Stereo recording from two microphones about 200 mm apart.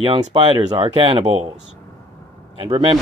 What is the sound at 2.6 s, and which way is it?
Speech, 25° right (ahead or behind).